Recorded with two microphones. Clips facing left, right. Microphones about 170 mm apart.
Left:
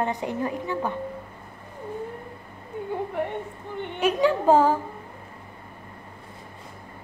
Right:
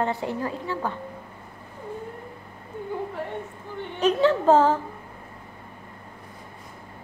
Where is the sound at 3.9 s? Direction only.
10° left (ahead or behind).